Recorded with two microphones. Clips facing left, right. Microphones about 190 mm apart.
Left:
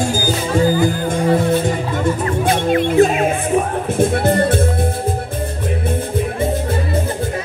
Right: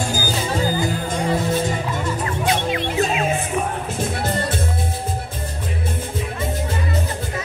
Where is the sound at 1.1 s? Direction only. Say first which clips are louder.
Left 5 dB; 55° left (ahead or behind).